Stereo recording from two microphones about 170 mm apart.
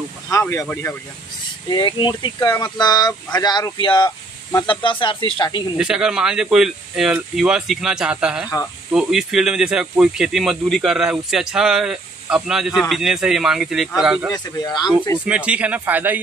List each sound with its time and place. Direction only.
0.3 s speech: 15° left (ahead or behind)
1.7 s speech: 25° left (ahead or behind)
5.8 s speech: 5° right (ahead or behind)
14.3 s speech: 25° left (ahead or behind)
15.1 s speech: 5° right (ahead or behind)